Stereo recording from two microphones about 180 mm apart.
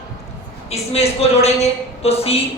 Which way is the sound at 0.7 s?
35° left (ahead or behind).